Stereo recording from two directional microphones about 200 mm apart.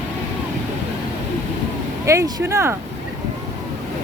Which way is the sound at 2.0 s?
15° right (ahead or behind).